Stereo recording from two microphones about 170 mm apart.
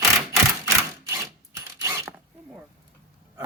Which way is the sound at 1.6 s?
20° right (ahead or behind).